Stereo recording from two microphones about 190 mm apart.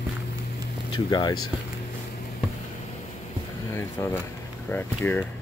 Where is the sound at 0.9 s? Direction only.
20° left (ahead or behind).